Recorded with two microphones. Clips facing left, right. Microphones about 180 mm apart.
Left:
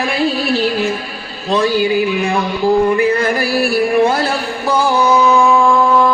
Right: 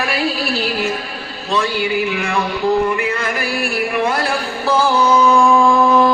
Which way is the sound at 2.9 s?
35° left (ahead or behind).